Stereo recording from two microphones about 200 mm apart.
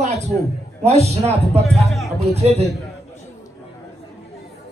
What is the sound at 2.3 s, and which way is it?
Speech, 30° right (ahead or behind).